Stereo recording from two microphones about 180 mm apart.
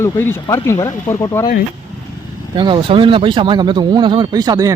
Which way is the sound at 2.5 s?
25° right (ahead or behind).